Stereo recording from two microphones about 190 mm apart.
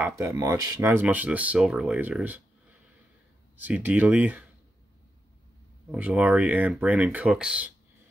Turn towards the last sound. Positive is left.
turn(degrees=-5)  # may be behind; listen again after turning